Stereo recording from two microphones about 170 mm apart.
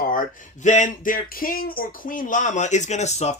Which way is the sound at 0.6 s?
45° left (ahead or behind).